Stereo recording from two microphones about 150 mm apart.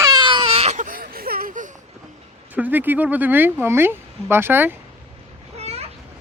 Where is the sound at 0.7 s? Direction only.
70° right (ahead or behind).